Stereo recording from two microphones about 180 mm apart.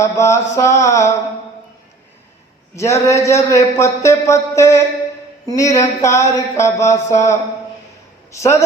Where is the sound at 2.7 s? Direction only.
15° left (ahead or behind).